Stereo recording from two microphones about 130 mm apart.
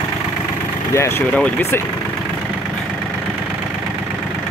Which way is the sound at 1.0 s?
20° left (ahead or behind).